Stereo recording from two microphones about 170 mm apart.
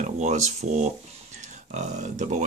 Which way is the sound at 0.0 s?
45° right (ahead or behind).